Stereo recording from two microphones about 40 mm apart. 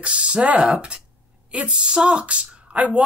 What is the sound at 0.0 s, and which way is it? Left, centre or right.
Speech, right.